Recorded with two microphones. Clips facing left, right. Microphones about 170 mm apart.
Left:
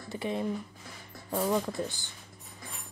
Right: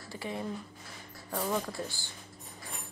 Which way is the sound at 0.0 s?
20° left (ahead or behind).